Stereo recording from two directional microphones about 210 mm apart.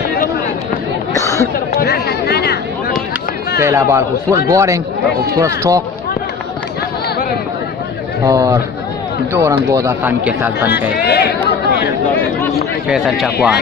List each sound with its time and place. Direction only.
1.1 s chatter: 15° left (ahead or behind)
1.8 s a sound: 50° left (ahead or behind)
3.6 s speech: 15° right (ahead or behind)
8.3 s speech: 15° right (ahead or behind)
10.7 s speech: 50° left (ahead or behind)
12.8 s speech: centre (ahead or behind)